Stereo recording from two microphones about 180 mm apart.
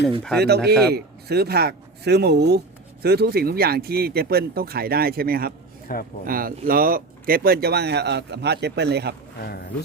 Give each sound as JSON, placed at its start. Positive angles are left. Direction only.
{"t": 0.3, "sound": "speech", "side_deg": -65}
{"t": 5.9, "sound": "speech", "side_deg": 55}
{"t": 6.2, "sound": "speech", "side_deg": -55}